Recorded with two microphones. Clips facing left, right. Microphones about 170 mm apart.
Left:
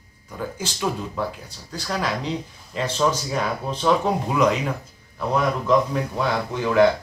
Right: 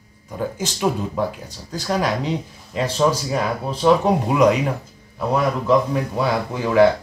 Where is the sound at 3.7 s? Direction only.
10° right (ahead or behind).